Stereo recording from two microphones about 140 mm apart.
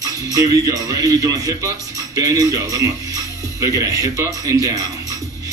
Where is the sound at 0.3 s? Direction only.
25° right (ahead or behind).